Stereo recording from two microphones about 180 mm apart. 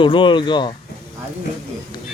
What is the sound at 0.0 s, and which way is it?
Speech, 25° left (ahead or behind).